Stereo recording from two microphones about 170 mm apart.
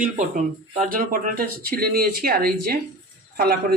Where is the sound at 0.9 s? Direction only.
55° right (ahead or behind).